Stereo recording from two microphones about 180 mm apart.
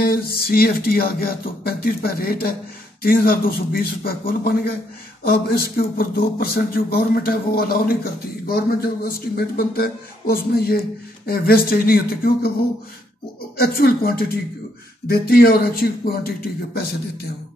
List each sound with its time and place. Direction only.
0.0 s speech: 55° left (ahead or behind)
13.6 s speech: 55° left (ahead or behind)